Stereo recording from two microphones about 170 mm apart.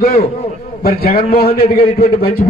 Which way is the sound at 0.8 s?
60° left (ahead or behind).